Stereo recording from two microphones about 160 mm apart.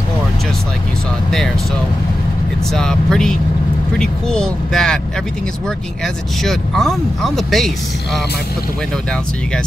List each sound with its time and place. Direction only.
2.7 s speech: 5° left (ahead or behind)
6.4 s speech: centre (ahead or behind)